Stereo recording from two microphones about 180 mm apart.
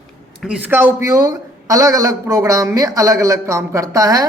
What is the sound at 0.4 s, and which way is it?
Speech, 5° right (ahead or behind).